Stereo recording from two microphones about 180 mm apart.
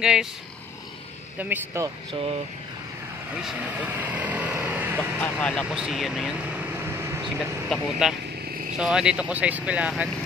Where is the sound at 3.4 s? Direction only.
10° right (ahead or behind).